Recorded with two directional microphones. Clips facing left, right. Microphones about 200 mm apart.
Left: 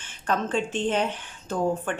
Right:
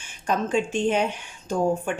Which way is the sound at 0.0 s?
10° right (ahead or behind).